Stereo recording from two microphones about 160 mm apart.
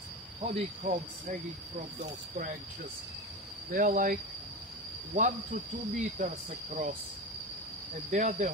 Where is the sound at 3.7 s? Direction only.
60° right (ahead or behind).